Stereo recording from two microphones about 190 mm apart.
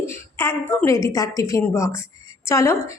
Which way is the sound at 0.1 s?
15° left (ahead or behind).